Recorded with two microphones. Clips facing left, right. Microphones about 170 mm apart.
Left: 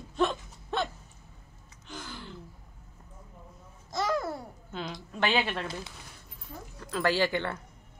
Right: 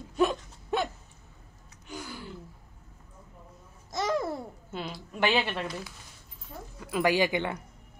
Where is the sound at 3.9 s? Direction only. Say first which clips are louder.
Right 1 dB; 20° right (ahead or behind).